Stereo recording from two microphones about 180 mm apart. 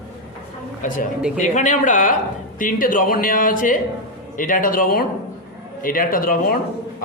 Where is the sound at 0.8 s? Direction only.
45° left (ahead or behind).